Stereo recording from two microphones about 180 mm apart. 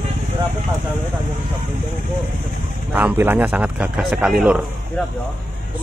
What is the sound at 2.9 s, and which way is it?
A man's voice, 10° right (ahead or behind).